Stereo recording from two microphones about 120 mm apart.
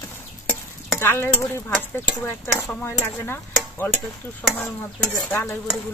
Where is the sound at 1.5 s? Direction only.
20° left (ahead or behind).